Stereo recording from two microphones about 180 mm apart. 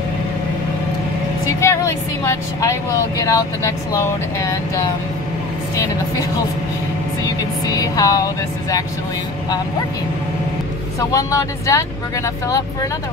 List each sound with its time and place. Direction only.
1.6 s vehicle: 15° left (ahead or behind)
3.2 s speech: 15° left (ahead or behind)
7.6 s speech: 20° left (ahead or behind)
11.0 s speech: 20° left (ahead or behind)